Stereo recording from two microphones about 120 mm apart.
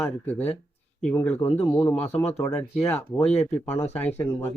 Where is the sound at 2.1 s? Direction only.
60° left (ahead or behind).